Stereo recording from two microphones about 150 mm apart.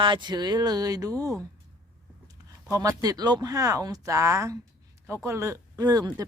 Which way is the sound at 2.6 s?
25° right (ahead or behind).